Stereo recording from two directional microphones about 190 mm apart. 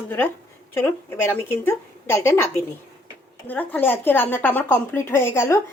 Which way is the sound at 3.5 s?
10° left (ahead or behind).